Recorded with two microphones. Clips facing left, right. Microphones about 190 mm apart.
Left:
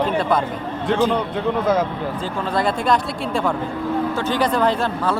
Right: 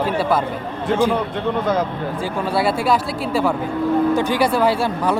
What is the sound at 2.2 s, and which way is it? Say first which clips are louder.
Speech: right 2 dB; 10° right (ahead or behind).